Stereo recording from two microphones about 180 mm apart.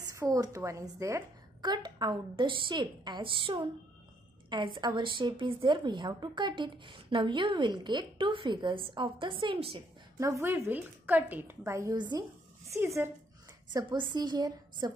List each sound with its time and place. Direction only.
0.0 s a woman's voice: 20° right (ahead or behind)
10.1 s a woman's voice: 15° right (ahead or behind)